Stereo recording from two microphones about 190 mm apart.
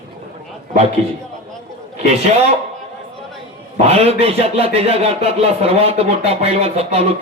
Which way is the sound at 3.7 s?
30° right (ahead or behind).